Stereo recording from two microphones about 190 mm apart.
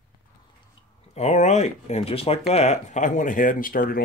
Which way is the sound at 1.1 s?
35° left (ahead or behind).